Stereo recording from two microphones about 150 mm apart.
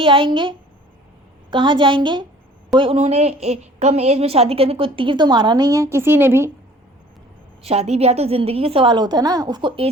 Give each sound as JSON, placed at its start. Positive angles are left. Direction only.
{"t": 0.0, "sound": "a woman's voice", "side_deg": -35}
{"t": 7.6, "sound": "a woman's voice", "side_deg": -45}